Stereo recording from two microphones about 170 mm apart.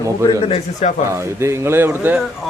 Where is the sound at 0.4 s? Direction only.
40° left (ahead or behind).